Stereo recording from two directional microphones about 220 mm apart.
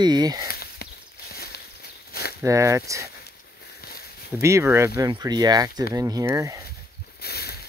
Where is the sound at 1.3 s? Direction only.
45° left (ahead or behind).